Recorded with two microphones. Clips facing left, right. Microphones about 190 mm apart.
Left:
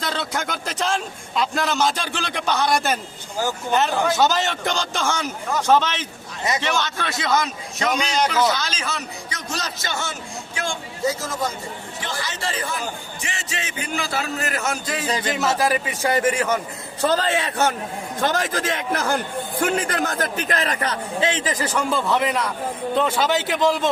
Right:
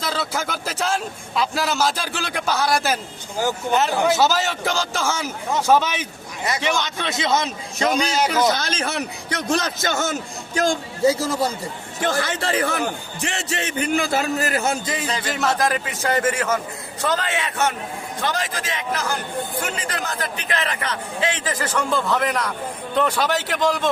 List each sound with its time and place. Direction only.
0.0 s a man's voice: centre (ahead or behind); by 8.0 s 35° right (ahead or behind)
8.1 s a man's voice: 10° right (ahead or behind)
8.4 s a man's voice: 50° right (ahead or behind); by 11.5 s 35° right (ahead or behind)
11.9 s a man's voice: 50° right (ahead or behind); by 14.8 s 30° right (ahead or behind)
15.3 s a man's voice: centre (ahead or behind)
17.0 s a man's voice: 30° left (ahead or behind)
18.2 s a man's voice: 45° left (ahead or behind); by 21.4 s 30° left (ahead or behind)
21.4 s a man's voice: 10° left (ahead or behind)